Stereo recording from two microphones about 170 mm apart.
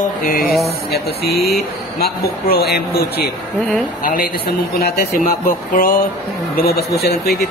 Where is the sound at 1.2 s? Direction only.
65° left (ahead or behind).